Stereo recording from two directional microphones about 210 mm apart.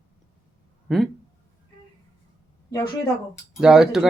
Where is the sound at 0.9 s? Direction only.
Centre (ahead or behind).